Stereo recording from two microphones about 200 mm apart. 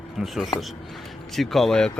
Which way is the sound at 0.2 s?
Centre (ahead or behind).